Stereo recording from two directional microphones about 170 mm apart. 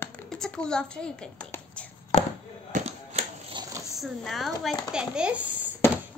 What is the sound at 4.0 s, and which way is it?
A child's voice, centre (ahead or behind).